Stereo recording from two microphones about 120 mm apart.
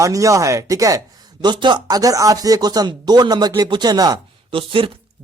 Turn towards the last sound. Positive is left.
turn(degrees=-45)  # may be behind; listen again after turning